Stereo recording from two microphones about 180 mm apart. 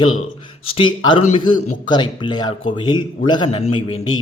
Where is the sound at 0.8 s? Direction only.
30° left (ahead or behind).